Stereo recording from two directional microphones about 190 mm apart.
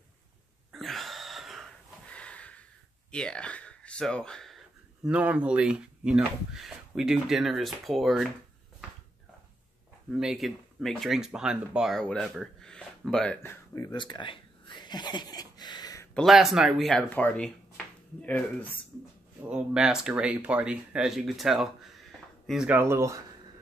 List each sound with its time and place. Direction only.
0.7 s wheeze: centre (ahead or behind)
3.1 s speech: 5° left (ahead or behind)
10.1 s speech: centre (ahead or behind)
13.9 s a sound: 25° left (ahead or behind)
16.2 s speech: centre (ahead or behind)
19.5 s speech: 5° right (ahead or behind)